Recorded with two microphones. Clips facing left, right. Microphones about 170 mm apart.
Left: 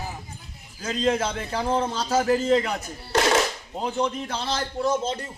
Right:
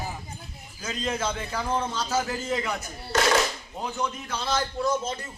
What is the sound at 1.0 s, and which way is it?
A man's voice, 30° left (ahead or behind).